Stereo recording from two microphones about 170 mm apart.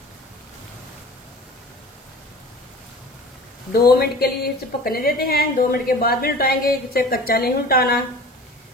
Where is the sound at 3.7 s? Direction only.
65° left (ahead or behind).